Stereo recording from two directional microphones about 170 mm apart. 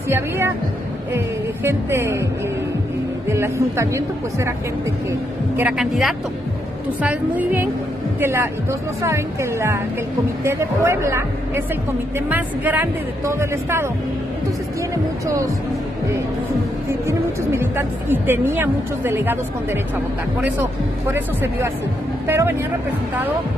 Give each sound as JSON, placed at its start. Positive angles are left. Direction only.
{"t": 1.1, "sound": "a woman's voice", "side_deg": -15}
{"t": 3.3, "sound": "a woman's voice", "side_deg": -15}
{"t": 5.6, "sound": "a woman's voice", "side_deg": -5}
{"t": 15.2, "sound": "speech", "side_deg": -20}
{"t": 17.1, "sound": "a woman's voice", "side_deg": -15}
{"t": 21.1, "sound": "a woman's voice", "side_deg": -15}